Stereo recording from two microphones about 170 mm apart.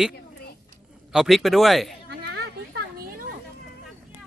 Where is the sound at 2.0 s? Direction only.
85° right.